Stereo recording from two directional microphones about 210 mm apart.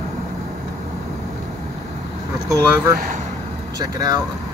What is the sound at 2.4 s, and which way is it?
Speech, 15° right (ahead or behind).